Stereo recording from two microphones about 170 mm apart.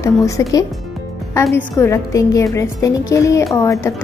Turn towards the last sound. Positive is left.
turn(degrees=15)  # may be behind; listen again after turning